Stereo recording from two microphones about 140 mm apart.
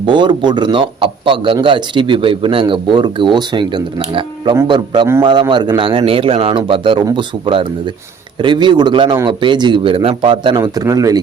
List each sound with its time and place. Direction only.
0.0 s speech: 35° right (ahead or behind)